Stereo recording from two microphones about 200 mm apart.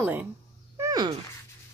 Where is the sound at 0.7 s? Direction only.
20° right (ahead or behind).